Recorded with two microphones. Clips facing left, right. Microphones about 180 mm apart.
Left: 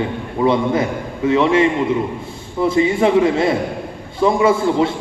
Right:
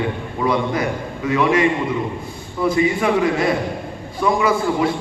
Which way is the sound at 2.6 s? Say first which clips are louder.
Left 3 dB; 25° left (ahead or behind).